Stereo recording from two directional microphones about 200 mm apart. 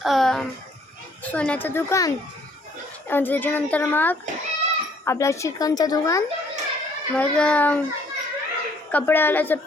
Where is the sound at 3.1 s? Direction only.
10° left (ahead or behind).